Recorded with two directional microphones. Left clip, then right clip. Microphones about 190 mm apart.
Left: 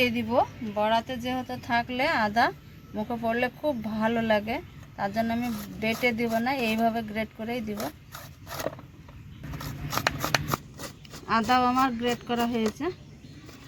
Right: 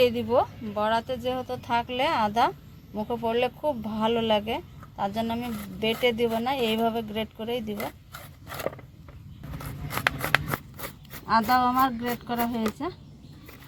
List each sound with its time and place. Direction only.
0.0 s speech: 35° right (ahead or behind)
11.3 s speech: 20° right (ahead or behind)